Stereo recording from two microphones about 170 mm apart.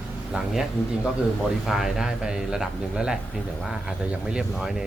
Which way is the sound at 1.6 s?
Centre (ahead or behind).